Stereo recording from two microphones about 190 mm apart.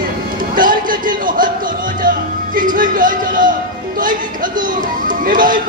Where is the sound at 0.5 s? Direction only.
45° right (ahead or behind).